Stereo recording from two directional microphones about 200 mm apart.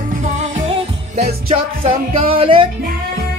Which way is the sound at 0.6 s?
30° right (ahead or behind).